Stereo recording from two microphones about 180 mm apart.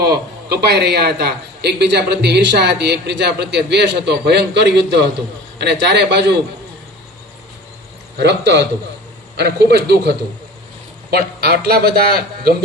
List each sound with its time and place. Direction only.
0.0 s a man's voice: 65° right (ahead or behind)
8.2 s a man's voice: 70° right (ahead or behind)
11.1 s a man's voice: 60° right (ahead or behind)